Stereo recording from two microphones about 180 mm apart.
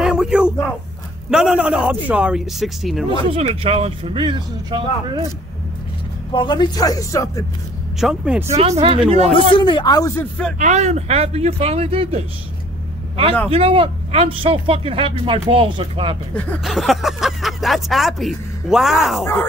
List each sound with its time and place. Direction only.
0.0 s a sound: 5° right (ahead or behind)
1.3 s speech: 5° right (ahead or behind)
3.1 s speech: 30° right (ahead or behind)
6.3 s speech: 25° left (ahead or behind)
8.0 s speech: 5° right (ahead or behind)
8.5 s speech: 35° right (ahead or behind)
9.3 s speech: 30° left (ahead or behind); by 10.5 s 10° left (ahead or behind)
10.6 s speech: 40° right (ahead or behind)
13.5 s speech: 30° right (ahead or behind)
16.3 s speech: 5° left (ahead or behind)